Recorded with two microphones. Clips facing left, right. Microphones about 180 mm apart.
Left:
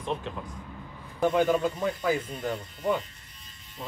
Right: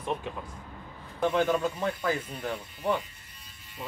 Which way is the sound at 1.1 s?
10° left (ahead or behind).